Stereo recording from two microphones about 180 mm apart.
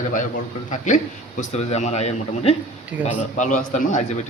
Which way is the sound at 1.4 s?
40° left (ahead or behind).